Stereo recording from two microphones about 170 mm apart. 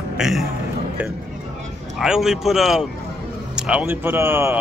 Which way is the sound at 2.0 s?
Centre (ahead or behind).